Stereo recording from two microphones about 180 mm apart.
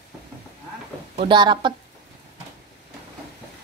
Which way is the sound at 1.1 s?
25° right (ahead or behind).